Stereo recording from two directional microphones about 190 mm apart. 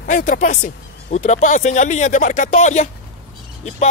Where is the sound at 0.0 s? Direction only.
45° left (ahead or behind).